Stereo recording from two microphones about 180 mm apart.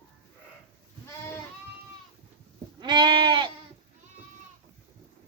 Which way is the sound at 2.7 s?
25° right (ahead or behind).